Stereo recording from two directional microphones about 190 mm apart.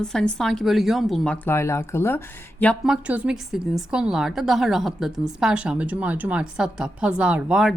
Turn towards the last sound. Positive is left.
turn(degrees=-5)  # may be behind; listen again after turning